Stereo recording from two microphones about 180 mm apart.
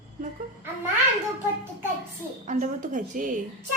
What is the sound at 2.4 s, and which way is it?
Speech, 45° right (ahead or behind).